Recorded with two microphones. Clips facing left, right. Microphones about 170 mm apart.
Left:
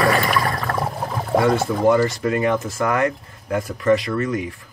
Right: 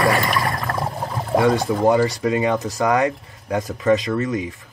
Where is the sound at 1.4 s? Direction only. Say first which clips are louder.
Right 1 dB; 15° right (ahead or behind).